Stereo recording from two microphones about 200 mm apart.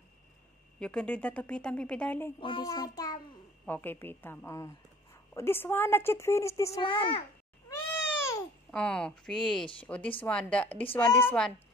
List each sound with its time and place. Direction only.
0.7 s speech: 5° left (ahead or behind)
2.4 s child singing: 20° left (ahead or behind)
3.6 s a woman's voice: 10° left (ahead or behind); by 7.2 s 25° left (ahead or behind)
7.7 s cat: 15° left (ahead or behind)
9.8 s a woman's voice: 5° left (ahead or behind)